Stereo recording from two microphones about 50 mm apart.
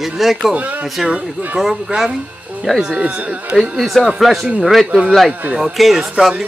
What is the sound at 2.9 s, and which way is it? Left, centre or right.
Speech, right.